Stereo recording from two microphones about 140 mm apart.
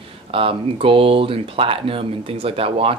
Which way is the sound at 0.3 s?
40° right (ahead or behind).